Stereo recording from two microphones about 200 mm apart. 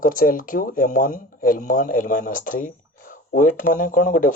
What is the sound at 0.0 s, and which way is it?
Speech, 45° left (ahead or behind).